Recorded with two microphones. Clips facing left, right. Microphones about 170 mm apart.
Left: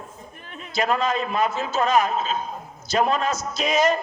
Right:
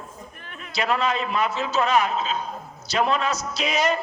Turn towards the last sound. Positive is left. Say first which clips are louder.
# left 3 dB
turn(degrees=45)  # may be behind; listen again after turning